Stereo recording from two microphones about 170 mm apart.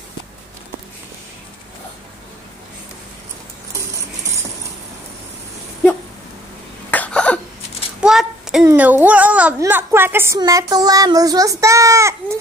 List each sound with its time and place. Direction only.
6.9 s cough: 10° left (ahead or behind)
8.0 s child singing: 5° right (ahead or behind)
8.6 s a child's voice: 10° right (ahead or behind)